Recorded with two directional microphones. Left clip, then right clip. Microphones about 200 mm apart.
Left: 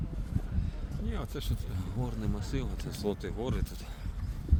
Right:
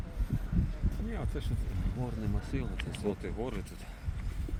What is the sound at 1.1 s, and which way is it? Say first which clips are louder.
Vehicle: left 2 dB; 60° left (ahead or behind).